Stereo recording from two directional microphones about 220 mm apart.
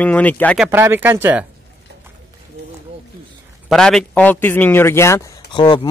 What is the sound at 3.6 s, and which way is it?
A man's voice, centre (ahead or behind).